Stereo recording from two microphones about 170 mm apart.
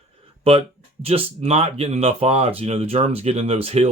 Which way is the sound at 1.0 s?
35° right (ahead or behind).